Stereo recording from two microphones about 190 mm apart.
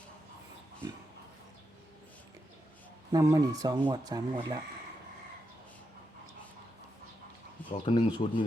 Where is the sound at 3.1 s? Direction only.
15° right (ahead or behind).